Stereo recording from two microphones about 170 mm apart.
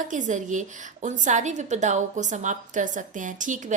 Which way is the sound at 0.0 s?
45° right (ahead or behind).